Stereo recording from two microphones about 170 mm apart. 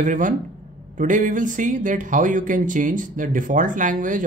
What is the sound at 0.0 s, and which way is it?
Speech, 50° right (ahead or behind).